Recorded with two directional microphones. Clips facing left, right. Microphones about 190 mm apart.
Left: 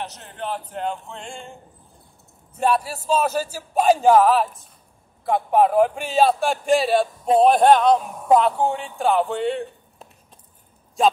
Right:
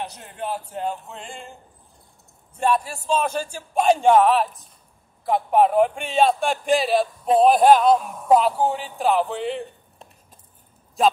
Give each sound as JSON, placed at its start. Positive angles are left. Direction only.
{"t": 0.0, "sound": "speech", "side_deg": -10}
{"t": 2.5, "sound": "a man's voice", "side_deg": 5}